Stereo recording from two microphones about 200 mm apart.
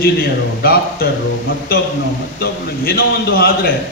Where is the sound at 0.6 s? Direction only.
50° left (ahead or behind).